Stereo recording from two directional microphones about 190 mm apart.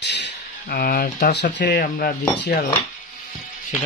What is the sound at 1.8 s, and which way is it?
Speech, 50° left (ahead or behind).